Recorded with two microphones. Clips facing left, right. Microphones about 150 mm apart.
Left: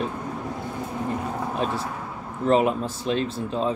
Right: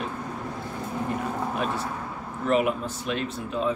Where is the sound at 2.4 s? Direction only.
30° left (ahead or behind).